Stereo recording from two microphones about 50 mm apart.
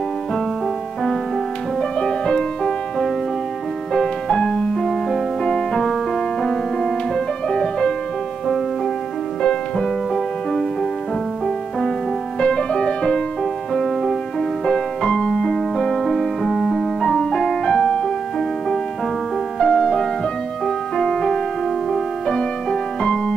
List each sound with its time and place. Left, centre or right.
1.8 s music: centre
12.4 s music: centre
19.6 s music: centre